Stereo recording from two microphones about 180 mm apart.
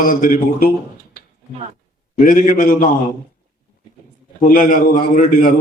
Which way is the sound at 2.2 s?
50° left (ahead or behind).